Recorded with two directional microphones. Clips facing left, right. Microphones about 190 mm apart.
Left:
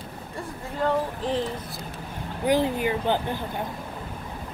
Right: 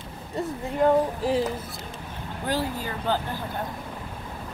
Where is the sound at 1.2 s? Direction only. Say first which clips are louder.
Right 3 dB; 5° right (ahead or behind).